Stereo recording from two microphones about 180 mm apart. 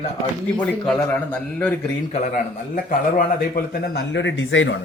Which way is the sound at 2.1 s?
45° left (ahead or behind).